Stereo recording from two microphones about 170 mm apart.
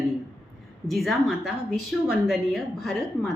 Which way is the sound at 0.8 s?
Centre (ahead or behind).